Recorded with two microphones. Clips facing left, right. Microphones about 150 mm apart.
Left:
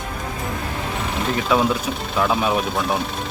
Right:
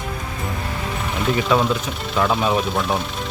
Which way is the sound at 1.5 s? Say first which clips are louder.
Left 3 dB; 5° left (ahead or behind).